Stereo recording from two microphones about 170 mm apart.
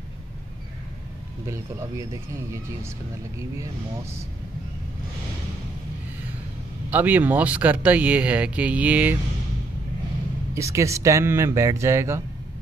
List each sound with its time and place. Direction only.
1.5 s speech: 15° right (ahead or behind)
6.9 s speech: 10° right (ahead or behind)
10.5 s speech: 15° right (ahead or behind)